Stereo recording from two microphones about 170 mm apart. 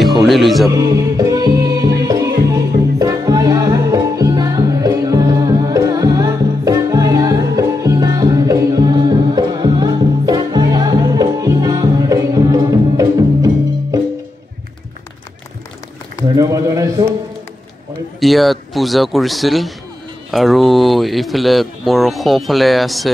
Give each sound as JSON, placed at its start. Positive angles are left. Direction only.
{"t": 0.0, "sound": "music", "side_deg": 0}
{"t": 0.7, "sound": "music", "side_deg": -20}
{"t": 16.3, "sound": "a sound", "side_deg": -20}
{"t": 18.2, "sound": "speech", "side_deg": 0}